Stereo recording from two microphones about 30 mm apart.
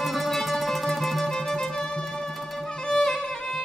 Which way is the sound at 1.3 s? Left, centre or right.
Centre.